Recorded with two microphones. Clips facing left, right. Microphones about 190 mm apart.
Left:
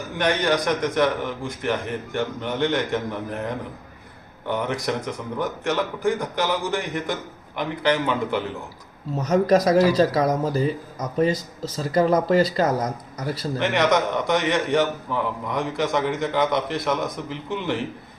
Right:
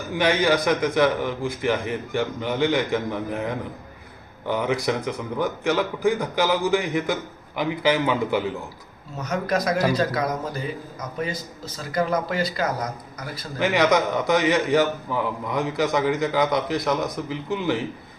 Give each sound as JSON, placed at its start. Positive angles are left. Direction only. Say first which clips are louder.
{"t": 0.1, "sound": "a man's voice", "louder": "right 2 dB", "side_deg": -5}
{"t": 9.3, "sound": "speech", "louder": "left 6 dB", "side_deg": 40}
{"t": 11.8, "sound": "speech", "louder": "left 5 dB", "side_deg": 35}
{"t": 13.6, "sound": "a man's voice", "louder": "right 1 dB", "side_deg": 0}